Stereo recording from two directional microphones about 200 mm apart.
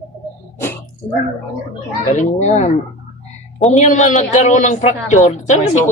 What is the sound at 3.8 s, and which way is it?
A man's voice, 35° left (ahead or behind).